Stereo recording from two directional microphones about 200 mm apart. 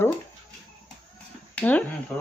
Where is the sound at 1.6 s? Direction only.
5° left (ahead or behind).